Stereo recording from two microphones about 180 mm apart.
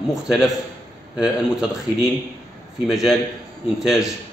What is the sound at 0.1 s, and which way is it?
Speech, centre (ahead or behind).